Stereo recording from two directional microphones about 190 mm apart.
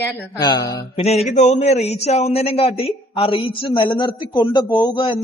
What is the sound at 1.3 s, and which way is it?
A man's voice, 35° left (ahead or behind).